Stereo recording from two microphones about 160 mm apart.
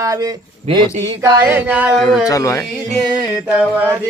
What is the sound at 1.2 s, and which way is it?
Mantra, 15° right (ahead or behind).